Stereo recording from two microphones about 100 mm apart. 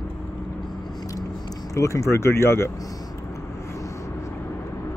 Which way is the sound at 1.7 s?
30° left (ahead or behind).